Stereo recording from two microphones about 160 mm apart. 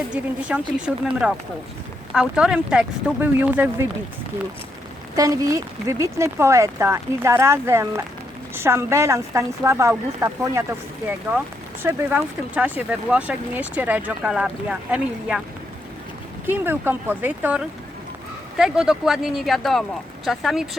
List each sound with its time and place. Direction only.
0.1 s speech: 5° right (ahead or behind)
5.1 s speech: 20° right (ahead or behind)
11.8 s speech: 15° right (ahead or behind)
16.5 s speech: 15° right (ahead or behind)